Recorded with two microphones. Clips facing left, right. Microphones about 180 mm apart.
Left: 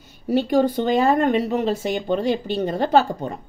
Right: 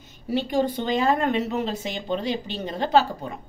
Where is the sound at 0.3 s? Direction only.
45° left (ahead or behind).